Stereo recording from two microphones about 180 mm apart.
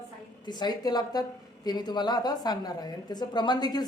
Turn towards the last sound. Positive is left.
turn(degrees=20)  # may be behind; listen again after turning